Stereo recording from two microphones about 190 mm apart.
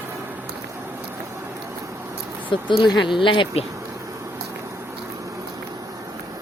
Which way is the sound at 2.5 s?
25° left (ahead or behind).